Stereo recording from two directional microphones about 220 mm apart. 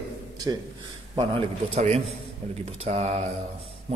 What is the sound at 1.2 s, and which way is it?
A man's voice, 25° right (ahead or behind).